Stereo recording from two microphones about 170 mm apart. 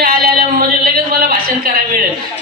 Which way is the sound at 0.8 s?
55° right (ahead or behind).